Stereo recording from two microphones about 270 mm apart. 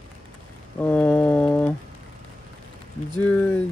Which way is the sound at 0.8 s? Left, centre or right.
Centre.